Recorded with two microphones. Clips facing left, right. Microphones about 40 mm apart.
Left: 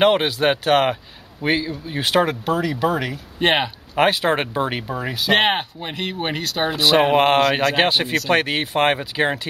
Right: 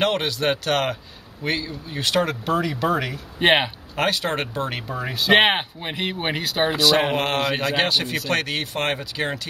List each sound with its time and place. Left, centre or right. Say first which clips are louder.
0.0 s speech: left 5 dB; centre
2.4 s speech: left 2 dB; centre
3.9 s speech: left 6 dB; centre
5.3 s speech: right 1 dB; centre
7.2 s speech: left 7 dB; left